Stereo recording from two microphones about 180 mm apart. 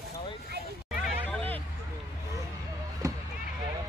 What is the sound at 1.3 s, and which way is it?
Hubbub, 10° left (ahead or behind).